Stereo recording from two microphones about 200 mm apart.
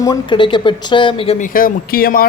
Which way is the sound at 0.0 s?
20° left (ahead or behind).